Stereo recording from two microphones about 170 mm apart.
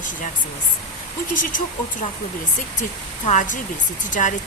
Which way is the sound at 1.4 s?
50° left (ahead or behind).